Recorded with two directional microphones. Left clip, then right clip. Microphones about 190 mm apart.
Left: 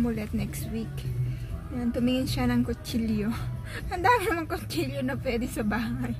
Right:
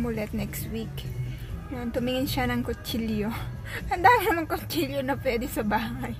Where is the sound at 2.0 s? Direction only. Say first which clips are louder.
Right 2 dB; 40° right (ahead or behind).